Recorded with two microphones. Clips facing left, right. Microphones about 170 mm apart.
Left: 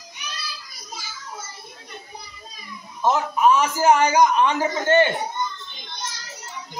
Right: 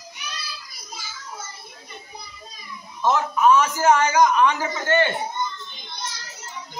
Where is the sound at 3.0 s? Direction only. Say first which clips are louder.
Even; 15° left (ahead or behind).